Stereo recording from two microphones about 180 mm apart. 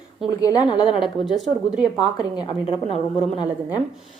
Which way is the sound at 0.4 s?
25° left (ahead or behind).